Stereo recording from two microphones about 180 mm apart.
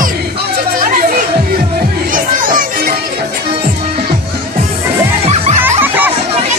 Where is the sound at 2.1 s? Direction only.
50° right (ahead or behind).